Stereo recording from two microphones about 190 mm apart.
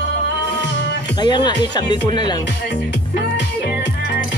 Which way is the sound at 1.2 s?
25° left (ahead or behind).